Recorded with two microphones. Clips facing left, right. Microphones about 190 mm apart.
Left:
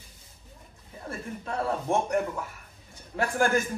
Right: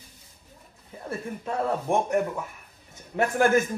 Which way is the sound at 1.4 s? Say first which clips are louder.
Right 2 dB; 15° right (ahead or behind).